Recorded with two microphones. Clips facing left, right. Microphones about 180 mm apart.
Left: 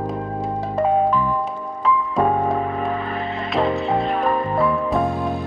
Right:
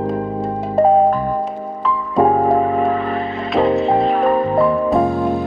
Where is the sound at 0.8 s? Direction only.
35° right (ahead or behind).